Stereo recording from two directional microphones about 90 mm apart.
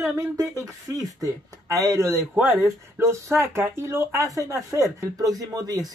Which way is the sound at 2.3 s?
25° right (ahead or behind).